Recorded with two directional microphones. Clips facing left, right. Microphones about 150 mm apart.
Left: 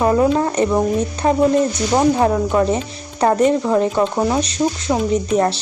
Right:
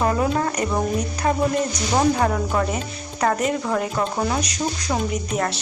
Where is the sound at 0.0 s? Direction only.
20° left (ahead or behind).